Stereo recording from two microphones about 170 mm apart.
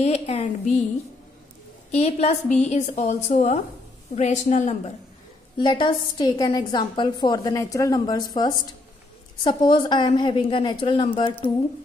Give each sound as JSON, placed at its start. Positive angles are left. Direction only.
{"t": 0.0, "sound": "speech", "side_deg": 40}
{"t": 1.9, "sound": "a woman's voice", "side_deg": 40}
{"t": 5.6, "sound": "a woman's voice", "side_deg": 25}